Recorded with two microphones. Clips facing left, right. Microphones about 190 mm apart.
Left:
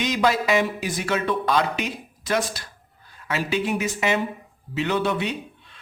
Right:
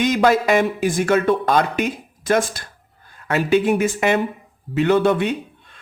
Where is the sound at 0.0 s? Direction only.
50° right (ahead or behind).